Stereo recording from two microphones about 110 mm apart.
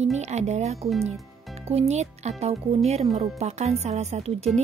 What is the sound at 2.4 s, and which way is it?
Speech, 70° right (ahead or behind).